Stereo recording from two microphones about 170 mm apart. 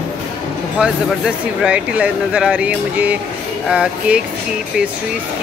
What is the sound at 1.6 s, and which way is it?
Speech, 5° right (ahead or behind).